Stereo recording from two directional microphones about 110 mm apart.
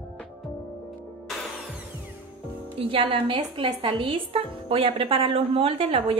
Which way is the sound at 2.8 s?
55° right (ahead or behind).